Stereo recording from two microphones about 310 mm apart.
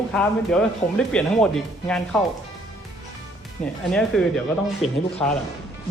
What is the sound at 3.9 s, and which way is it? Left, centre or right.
Speech, centre.